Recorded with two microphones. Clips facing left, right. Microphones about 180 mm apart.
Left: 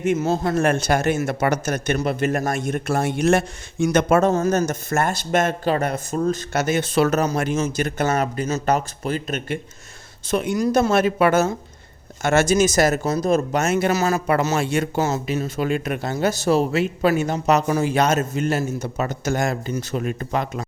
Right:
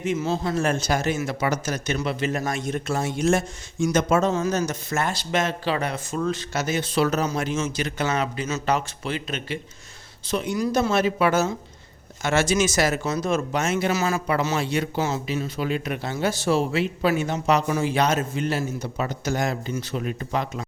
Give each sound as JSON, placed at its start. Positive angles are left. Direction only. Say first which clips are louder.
{"t": 0.0, "sound": "speech", "louder": "left 4 dB", "side_deg": 45}